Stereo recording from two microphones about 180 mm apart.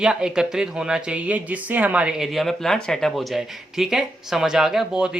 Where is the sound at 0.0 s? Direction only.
5° right (ahead or behind).